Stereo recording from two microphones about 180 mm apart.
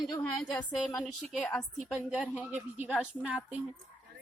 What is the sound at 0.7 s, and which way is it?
A woman's voice, centre (ahead or behind).